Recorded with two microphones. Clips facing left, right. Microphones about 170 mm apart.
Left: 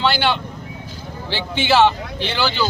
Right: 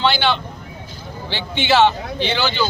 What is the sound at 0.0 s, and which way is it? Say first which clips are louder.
A man's voice: right 1 dB; 5° left (ahead or behind).